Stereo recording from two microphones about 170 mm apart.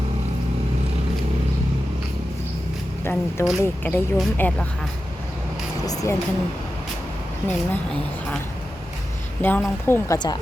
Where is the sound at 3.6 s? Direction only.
15° left (ahead or behind).